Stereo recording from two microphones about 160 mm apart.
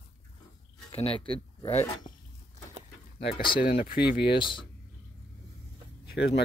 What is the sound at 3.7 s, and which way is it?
Speech, 75° left (ahead or behind).